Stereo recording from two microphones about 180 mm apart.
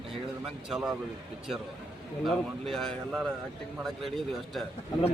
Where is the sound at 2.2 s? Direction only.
Centre (ahead or behind).